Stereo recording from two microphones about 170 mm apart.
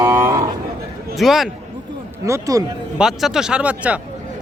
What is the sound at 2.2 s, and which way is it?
Speech, 20° right (ahead or behind).